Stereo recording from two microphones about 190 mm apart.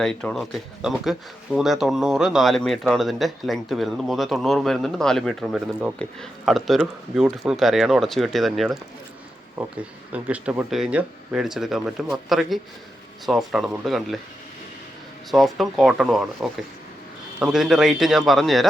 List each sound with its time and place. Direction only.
0.0 s speech: 5° left (ahead or behind)
10.1 s speech: 5° right (ahead or behind)
15.3 s speech: centre (ahead or behind)